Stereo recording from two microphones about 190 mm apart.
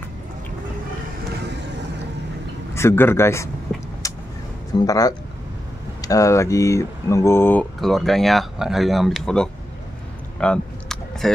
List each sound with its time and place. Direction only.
2.7 s speech: 15° left (ahead or behind)
3.7 s vehicle: centre (ahead or behind)
4.7 s speech: 20° left (ahead or behind)
7.8 s speech: centre (ahead or behind)
10.4 s vehicle: 5° left (ahead or behind)